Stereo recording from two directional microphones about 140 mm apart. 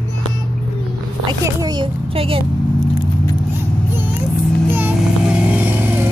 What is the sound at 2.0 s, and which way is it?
Speech, 40° right (ahead or behind).